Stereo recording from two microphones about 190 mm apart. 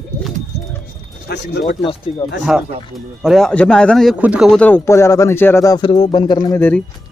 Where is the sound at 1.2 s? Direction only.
60° left (ahead or behind).